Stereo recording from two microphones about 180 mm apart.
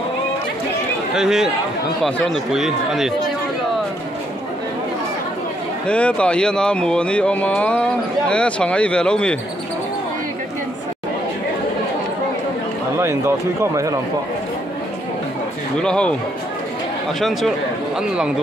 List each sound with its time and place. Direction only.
1.1 s speech: 5° right (ahead or behind)
5.9 s speech: 5° left (ahead or behind)
12.9 s speech: 15° right (ahead or behind)
15.8 s speech: 5° left (ahead or behind)
17.2 s speech: centre (ahead or behind)